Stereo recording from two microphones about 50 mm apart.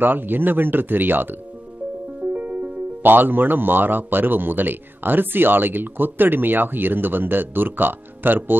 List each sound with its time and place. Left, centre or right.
0.0 s speech: right
2.3 s speech: right